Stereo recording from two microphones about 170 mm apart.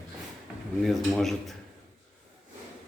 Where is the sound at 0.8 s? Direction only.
Centre (ahead or behind).